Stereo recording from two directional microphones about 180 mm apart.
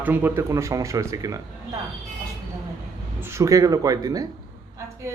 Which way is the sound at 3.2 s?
15° right (ahead or behind).